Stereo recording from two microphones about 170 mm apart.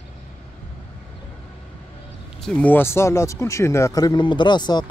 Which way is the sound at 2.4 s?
10° left (ahead or behind).